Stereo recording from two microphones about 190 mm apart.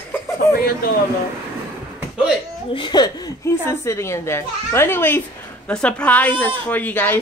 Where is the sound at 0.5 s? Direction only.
50° left (ahead or behind).